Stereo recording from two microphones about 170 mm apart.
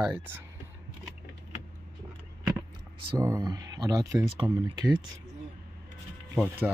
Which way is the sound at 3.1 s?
20° right (ahead or behind).